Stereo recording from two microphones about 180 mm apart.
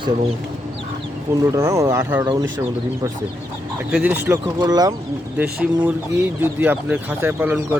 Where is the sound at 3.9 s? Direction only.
10° right (ahead or behind).